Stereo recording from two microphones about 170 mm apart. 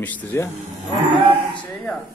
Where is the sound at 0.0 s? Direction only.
10° left (ahead or behind).